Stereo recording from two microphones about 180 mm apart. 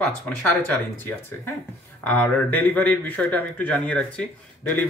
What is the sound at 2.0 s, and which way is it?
Speech, 10° left (ahead or behind).